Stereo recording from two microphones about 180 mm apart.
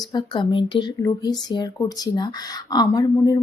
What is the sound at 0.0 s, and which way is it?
Speech, 25° left (ahead or behind).